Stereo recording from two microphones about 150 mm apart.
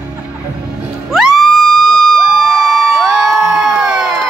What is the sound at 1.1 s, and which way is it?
Crowd, centre (ahead or behind).